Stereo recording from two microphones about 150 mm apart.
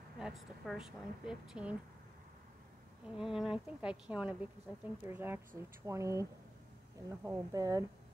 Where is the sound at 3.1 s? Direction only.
Centre (ahead or behind); by 7.9 s 25° right (ahead or behind).